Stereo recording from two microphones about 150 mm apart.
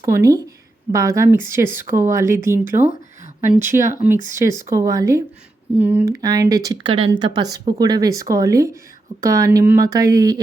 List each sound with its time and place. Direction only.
0.0 s a woman's voice: 20° right (ahead or behind)
6.2 s a woman's voice: 25° right (ahead or behind)